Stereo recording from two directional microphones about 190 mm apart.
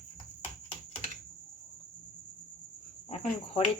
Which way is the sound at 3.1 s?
30° left (ahead or behind).